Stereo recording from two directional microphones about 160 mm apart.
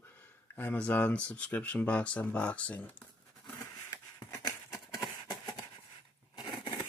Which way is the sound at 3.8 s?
20° left (ahead or behind).